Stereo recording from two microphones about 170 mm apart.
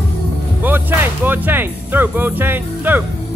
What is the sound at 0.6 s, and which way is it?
Speech, 10° right (ahead or behind).